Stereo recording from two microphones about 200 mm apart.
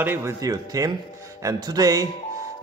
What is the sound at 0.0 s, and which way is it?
A man's voice, 10° right (ahead or behind).